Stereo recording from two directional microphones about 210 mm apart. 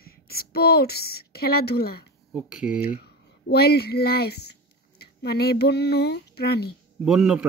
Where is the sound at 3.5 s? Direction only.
50° left (ahead or behind).